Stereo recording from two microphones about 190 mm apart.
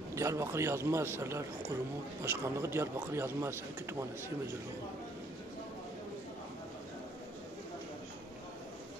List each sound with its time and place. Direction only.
0.1 s speech: 15° right (ahead or behind)